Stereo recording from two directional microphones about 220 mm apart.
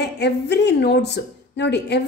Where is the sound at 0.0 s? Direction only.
50° left (ahead or behind).